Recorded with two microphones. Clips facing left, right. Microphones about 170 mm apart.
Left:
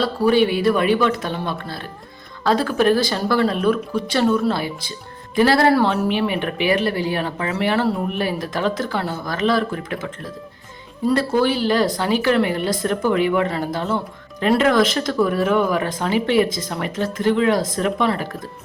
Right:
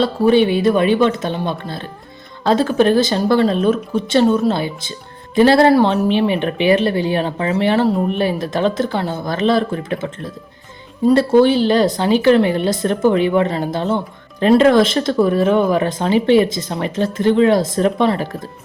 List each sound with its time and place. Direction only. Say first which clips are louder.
0.0 s speech: right 3 dB; 25° right (ahead or behind)
11.1 s speech: right 7 dB; 25° right (ahead or behind)